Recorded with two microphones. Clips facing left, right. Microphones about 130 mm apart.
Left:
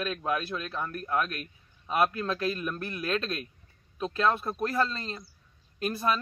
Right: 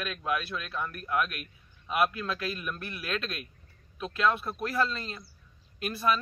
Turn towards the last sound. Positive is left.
turn(degrees=40)  # may be behind; listen again after turning